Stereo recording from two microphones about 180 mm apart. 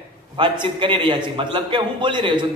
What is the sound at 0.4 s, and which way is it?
A man's voice, 25° right (ahead or behind).